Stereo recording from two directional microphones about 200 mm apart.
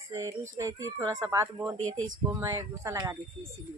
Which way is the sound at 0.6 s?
15° right (ahead or behind).